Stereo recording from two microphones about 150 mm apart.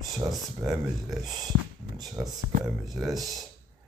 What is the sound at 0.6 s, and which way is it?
Speech, 20° right (ahead or behind).